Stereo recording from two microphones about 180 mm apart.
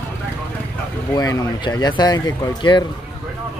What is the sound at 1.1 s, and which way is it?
Speech, 20° left (ahead or behind).